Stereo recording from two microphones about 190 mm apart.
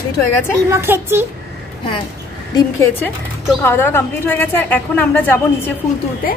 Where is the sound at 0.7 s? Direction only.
10° right (ahead or behind).